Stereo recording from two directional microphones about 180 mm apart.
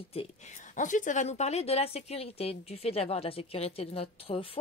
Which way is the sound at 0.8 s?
45° left (ahead or behind).